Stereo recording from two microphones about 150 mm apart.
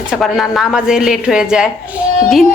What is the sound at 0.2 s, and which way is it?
A woman's voice, centre (ahead or behind).